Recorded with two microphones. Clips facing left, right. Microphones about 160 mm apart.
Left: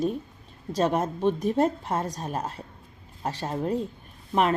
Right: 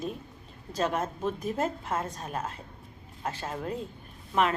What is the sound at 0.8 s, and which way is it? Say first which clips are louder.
A woman's voice: left 5 dB; 35° left (ahead or behind).